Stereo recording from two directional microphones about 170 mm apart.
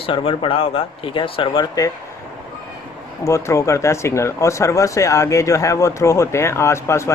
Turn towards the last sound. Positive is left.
turn(degrees=15)  # may be behind; listen again after turning